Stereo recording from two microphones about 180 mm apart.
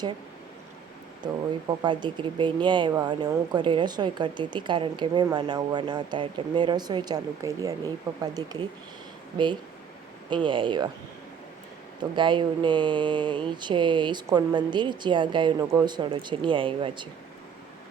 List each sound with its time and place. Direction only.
1.2 s speech: 25° right (ahead or behind)
10.2 s speech: 25° right (ahead or behind)
12.1 s speech: 25° right (ahead or behind)